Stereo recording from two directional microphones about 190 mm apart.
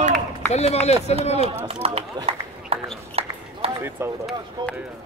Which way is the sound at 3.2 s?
30° right (ahead or behind).